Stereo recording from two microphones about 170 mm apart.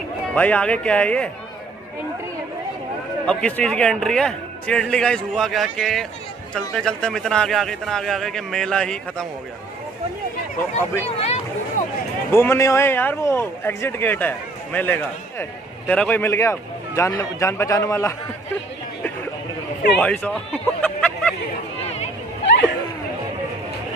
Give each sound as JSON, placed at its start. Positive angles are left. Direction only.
{"t": 0.3, "sound": "a man's voice", "side_deg": 5}
{"t": 3.3, "sound": "speech", "side_deg": 5}
{"t": 10.8, "sound": "a man's voice", "side_deg": 15}
{"t": 11.1, "sound": "a sound", "side_deg": 35}
{"t": 12.3, "sound": "a man's voice", "side_deg": 15}
{"t": 20.0, "sound": "speech", "side_deg": 5}
{"t": 21.8, "sound": "a sound", "side_deg": 40}